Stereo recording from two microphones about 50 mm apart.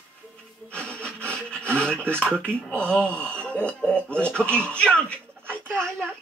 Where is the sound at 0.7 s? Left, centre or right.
Left.